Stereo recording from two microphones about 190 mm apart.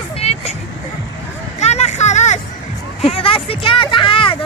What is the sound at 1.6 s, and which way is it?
Hubbub, 35° left (ahead or behind).